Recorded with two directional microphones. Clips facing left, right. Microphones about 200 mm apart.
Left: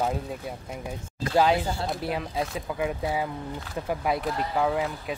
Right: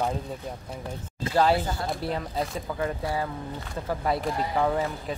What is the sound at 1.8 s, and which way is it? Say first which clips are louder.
Speech: even; centre (ahead or behind).